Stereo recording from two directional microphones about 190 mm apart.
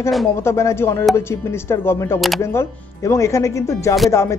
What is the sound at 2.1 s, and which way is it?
Speech, centre (ahead or behind).